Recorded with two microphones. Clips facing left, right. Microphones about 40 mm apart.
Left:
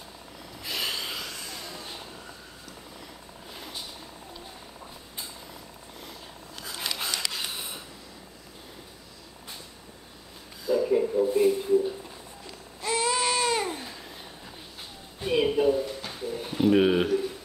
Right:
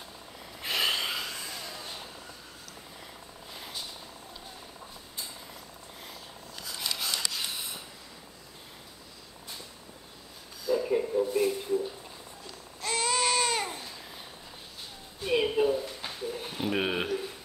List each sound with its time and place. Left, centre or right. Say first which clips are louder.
0.6 s train: right 3 dB; right
1.1 s train: right 1 dB; centre
1.5 s vehicle: left 1 dB; centre
3.5 s vehicle: left 1 dB; centre
6.6 s a sound: left 2 dB; left
10.7 s a sound: left 3 dB; centre
12.8 s baby cry: left 2 dB; centre
15.2 s a sound: left 3 dB; centre
16.1 s pigeon: left 3 dB; centre